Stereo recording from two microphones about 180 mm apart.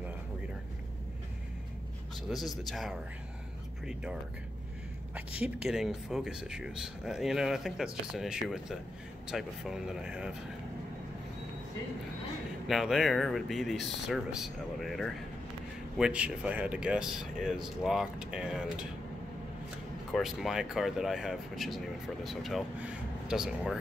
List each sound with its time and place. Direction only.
2.2 s speech: centre (ahead or behind)
12.6 s speech: centre (ahead or behind)
20.1 s speech: centre (ahead or behind)